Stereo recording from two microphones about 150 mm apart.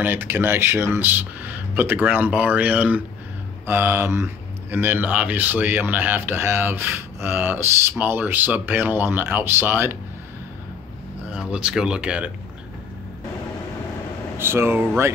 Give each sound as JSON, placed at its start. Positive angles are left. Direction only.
{"t": 0.0, "sound": "speech", "side_deg": -15}
{"t": 11.2, "sound": "speech", "side_deg": -5}
{"t": 14.4, "sound": "speech", "side_deg": -15}